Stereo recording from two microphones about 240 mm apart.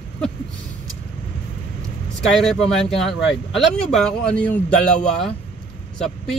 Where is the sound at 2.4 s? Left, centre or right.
Centre.